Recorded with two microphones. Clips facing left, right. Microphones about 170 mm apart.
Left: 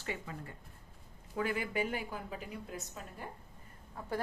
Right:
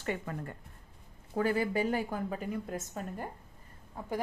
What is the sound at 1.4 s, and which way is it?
A woman's voice, 35° right (ahead or behind).